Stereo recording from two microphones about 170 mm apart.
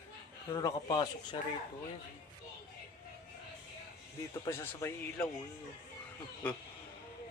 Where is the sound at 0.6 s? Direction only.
20° left (ahead or behind).